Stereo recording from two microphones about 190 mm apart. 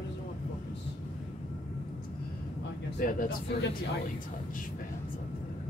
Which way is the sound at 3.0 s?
45° left (ahead or behind).